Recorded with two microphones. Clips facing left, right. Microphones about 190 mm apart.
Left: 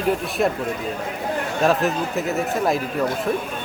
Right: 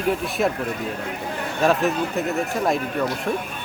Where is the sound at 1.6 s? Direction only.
Centre (ahead or behind).